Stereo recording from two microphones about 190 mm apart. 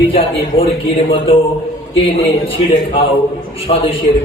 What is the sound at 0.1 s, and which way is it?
Speech, 30° left (ahead or behind).